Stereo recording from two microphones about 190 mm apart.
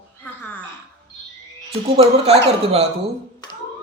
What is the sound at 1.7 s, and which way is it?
Speech, 30° right (ahead or behind).